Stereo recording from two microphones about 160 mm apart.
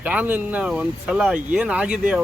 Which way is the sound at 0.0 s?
10° right (ahead or behind).